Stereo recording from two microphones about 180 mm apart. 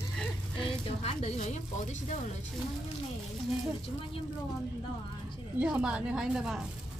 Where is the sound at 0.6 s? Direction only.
35° left (ahead or behind).